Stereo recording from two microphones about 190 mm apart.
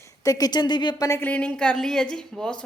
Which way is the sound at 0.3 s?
20° left (ahead or behind).